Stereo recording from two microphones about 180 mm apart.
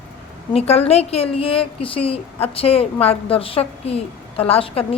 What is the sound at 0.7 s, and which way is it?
A woman's voice, 35° left (ahead or behind).